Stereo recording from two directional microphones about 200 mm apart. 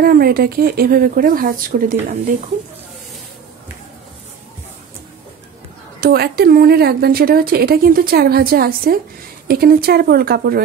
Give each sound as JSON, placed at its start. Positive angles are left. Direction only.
{"t": 0.0, "sound": "a woman's voice", "side_deg": -50}
{"t": 5.9, "sound": "a woman's voice", "side_deg": -50}